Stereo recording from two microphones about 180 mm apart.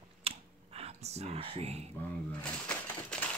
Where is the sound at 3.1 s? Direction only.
5° left (ahead or behind).